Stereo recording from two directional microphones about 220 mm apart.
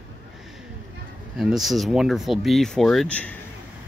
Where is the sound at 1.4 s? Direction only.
Centre (ahead or behind).